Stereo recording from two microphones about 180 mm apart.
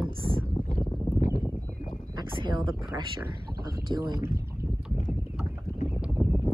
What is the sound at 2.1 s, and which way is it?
Speech, 25° right (ahead or behind).